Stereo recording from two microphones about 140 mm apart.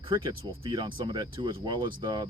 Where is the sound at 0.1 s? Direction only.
30° right (ahead or behind).